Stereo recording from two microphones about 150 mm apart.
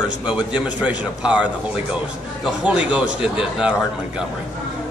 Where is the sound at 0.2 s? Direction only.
10° right (ahead or behind).